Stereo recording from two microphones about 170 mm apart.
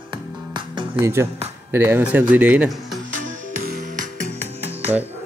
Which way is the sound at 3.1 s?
50° right (ahead or behind).